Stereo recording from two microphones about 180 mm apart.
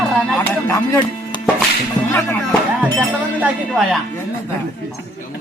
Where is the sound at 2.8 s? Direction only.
10° right (ahead or behind).